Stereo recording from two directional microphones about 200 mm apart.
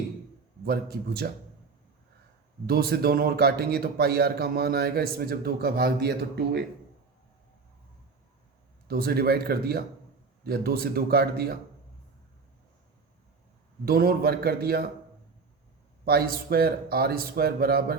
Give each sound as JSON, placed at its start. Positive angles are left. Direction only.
{"t": 0.6, "sound": "a man's voice", "side_deg": -50}
{"t": 2.6, "sound": "a man's voice", "side_deg": -50}
{"t": 8.9, "sound": "a man's voice", "side_deg": -50}
{"t": 13.8, "sound": "a man's voice", "side_deg": -50}
{"t": 16.0, "sound": "a man's voice", "side_deg": -50}